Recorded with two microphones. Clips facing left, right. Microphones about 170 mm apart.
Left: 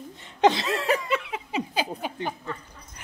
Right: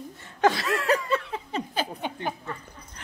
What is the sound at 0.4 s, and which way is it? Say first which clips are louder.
Chuckle: left 2 dB; 20° left (ahead or behind).